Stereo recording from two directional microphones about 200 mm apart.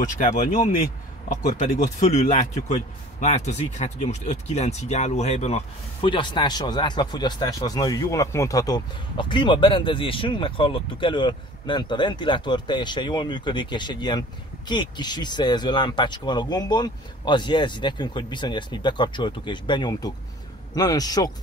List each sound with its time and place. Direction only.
0.0 s a man's voice: 40° left (ahead or behind); by 21.3 s 20° left (ahead or behind)